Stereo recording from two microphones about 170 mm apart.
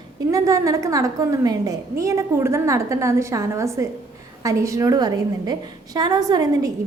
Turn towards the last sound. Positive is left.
turn(degrees=-20)  # may be behind; listen again after turning